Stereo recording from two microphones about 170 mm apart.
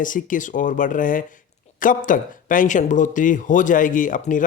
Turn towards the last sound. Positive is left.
turn(degrees=50)  # may be behind; listen again after turning